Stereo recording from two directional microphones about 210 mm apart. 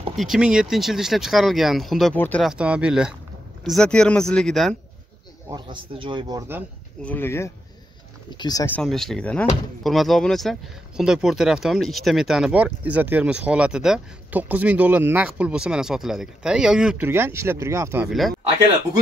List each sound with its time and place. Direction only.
0.1 s speech: centre (ahead or behind)
5.5 s a man's voice: 25° right (ahead or behind)
7.0 s speech: 10° left (ahead or behind)
8.7 s speech: centre (ahead or behind)